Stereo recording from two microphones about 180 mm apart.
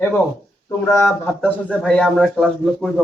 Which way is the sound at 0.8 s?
15° left (ahead or behind).